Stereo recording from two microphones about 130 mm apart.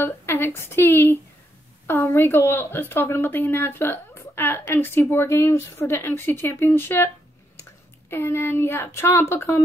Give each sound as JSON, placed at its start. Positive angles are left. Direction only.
{"t": 0.0, "sound": "a woman's voice", "side_deg": 20}
{"t": 8.1, "sound": "speech", "side_deg": 20}